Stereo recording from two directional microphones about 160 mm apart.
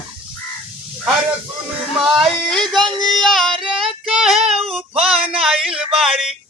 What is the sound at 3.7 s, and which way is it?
Child singing, centre (ahead or behind).